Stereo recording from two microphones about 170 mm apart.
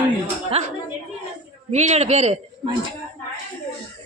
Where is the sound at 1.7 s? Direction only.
40° right (ahead or behind).